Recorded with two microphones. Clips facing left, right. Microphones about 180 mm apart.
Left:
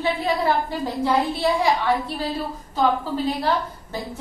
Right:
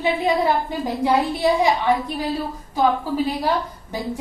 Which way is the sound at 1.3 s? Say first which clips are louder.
Right 2 dB; 20° right (ahead or behind).